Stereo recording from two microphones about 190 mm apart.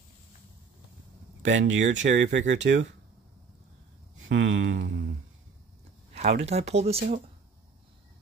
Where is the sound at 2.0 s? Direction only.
40° right (ahead or behind).